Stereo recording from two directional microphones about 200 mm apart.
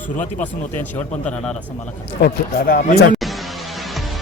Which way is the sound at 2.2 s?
50° left (ahead or behind).